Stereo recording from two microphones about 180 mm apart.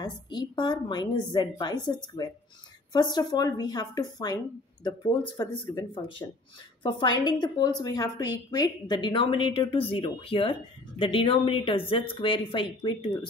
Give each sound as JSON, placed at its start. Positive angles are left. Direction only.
{"t": 0.0, "sound": "a woman's voice", "side_deg": 25}
{"t": 6.8, "sound": "a woman's voice", "side_deg": 25}